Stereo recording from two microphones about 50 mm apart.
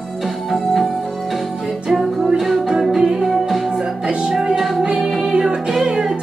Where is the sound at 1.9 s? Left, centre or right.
Centre.